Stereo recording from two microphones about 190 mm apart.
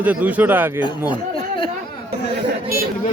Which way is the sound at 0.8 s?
25° left (ahead or behind).